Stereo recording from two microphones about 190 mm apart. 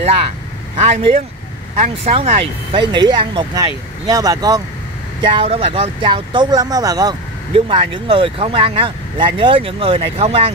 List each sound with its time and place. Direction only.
0.7 s speech: 30° right (ahead or behind)